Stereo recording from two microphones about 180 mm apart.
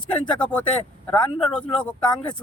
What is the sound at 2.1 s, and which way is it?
Speech, 25° left (ahead or behind).